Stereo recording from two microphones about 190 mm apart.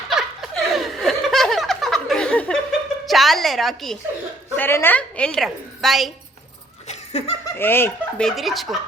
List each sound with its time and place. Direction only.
0.1 s laughter: centre (ahead or behind)
3.1 s music: centre (ahead or behind)
4.5 s a woman's voice: 10° left (ahead or behind)
6.8 s laughter: 35° left (ahead or behind)
7.5 s speech: 10° left (ahead or behind)
8.3 s turkey: centre (ahead or behind)